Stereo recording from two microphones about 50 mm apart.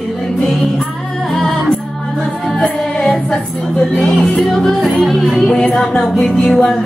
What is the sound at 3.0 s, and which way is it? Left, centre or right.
Music, centre.